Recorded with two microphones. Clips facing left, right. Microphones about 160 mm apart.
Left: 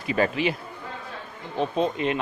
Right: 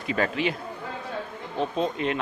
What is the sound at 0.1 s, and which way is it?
Speech, 5° left (ahead or behind).